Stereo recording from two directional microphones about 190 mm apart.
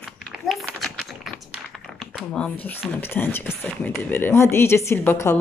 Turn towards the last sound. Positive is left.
turn(degrees=15)  # may be behind; listen again after turning